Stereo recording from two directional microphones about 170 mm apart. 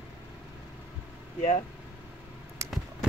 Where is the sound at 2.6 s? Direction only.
15° right (ahead or behind).